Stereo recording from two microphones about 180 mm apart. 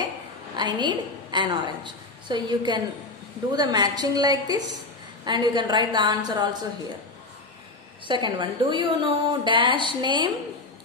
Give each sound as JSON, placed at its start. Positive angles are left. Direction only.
{"t": 0.6, "sound": "a woman's voice", "side_deg": -25}
{"t": 8.1, "sound": "a woman's voice", "side_deg": -25}